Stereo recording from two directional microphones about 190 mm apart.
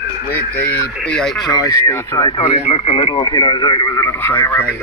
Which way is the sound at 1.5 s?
20° left (ahead or behind).